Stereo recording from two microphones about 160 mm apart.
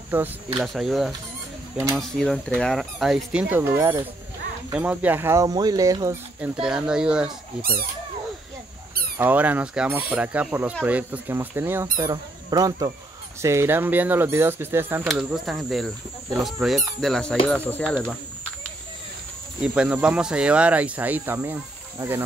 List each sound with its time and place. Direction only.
0.1 s speech: 10° right (ahead or behind)
6.4 s speech: 5° right (ahead or behind)
9.2 s speech: 10° right (ahead or behind)
15.0 s speech: centre (ahead or behind)
19.6 s speech: 5° right (ahead or behind)